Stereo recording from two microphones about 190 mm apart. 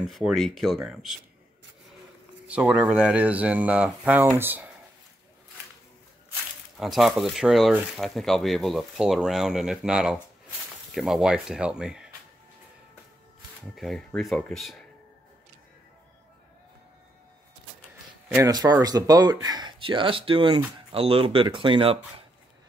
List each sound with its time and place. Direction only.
0.0 s speech: centre (ahead or behind)
2.4 s speech: 5° right (ahead or behind)
6.8 s speech: centre (ahead or behind)
13.7 s speech: centre (ahead or behind)
18.3 s speech: 20° right (ahead or behind)